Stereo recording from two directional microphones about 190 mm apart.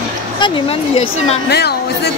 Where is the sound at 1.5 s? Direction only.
60° left (ahead or behind).